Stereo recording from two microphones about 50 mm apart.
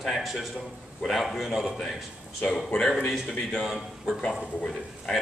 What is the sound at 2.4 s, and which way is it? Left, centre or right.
Speech, centre.